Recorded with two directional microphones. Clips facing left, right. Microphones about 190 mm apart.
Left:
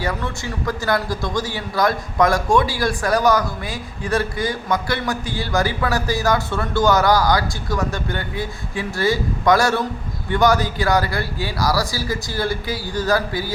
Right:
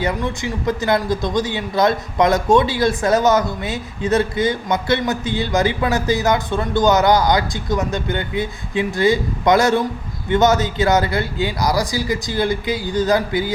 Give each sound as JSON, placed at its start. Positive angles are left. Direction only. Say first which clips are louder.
{"t": 0.0, "sound": "a man's voice", "louder": "right 4 dB", "side_deg": -20}